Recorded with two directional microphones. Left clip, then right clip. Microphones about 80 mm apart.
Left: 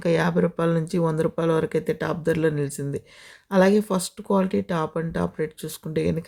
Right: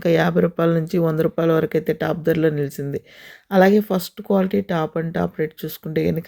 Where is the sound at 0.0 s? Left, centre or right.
Right.